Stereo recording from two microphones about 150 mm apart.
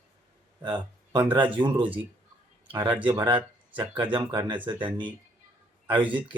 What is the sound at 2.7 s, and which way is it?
Speech, 30° right (ahead or behind).